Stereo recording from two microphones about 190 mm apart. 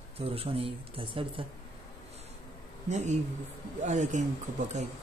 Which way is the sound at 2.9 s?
35° right (ahead or behind).